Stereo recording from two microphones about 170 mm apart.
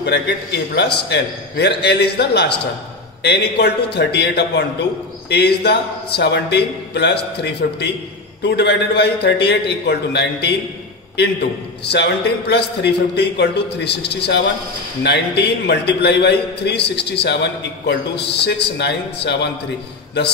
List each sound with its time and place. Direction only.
0.0 s a man's voice: 90° left
11.9 s a man's voice: 80° left